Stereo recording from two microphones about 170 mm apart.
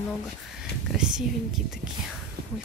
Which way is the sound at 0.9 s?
5° right (ahead or behind).